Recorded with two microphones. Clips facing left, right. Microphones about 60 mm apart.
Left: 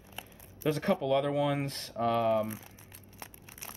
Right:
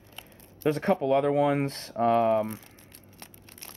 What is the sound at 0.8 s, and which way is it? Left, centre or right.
Speech, right.